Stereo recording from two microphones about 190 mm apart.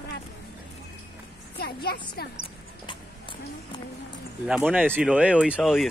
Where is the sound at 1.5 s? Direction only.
55° left (ahead or behind).